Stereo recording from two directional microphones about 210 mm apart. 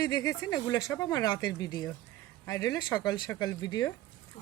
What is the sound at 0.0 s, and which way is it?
Speech, 15° left (ahead or behind).